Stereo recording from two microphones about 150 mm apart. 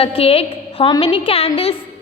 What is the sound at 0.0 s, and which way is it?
A woman's voice, 40° left (ahead or behind).